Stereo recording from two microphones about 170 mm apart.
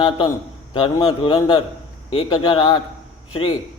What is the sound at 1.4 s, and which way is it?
Speech, 25° left (ahead or behind).